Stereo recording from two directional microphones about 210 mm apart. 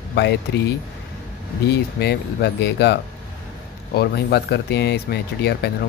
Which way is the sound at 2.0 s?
50° left (ahead or behind).